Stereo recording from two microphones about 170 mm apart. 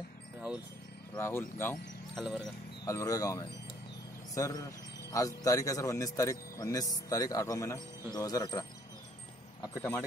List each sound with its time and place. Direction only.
1.1 s speech: 15° left (ahead or behind)
2.1 s speech: centre (ahead or behind)
2.8 s a man's voice: 20° left (ahead or behind)